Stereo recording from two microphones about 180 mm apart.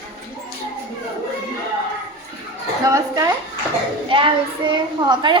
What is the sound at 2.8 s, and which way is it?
Speech, 20° right (ahead or behind).